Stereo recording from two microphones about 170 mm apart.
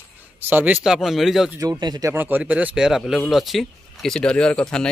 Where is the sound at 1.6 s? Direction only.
25° right (ahead or behind).